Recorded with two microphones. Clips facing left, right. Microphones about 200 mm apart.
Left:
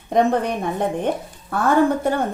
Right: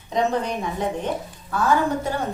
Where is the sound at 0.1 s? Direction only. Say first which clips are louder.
Left 4 dB; 55° left (ahead or behind).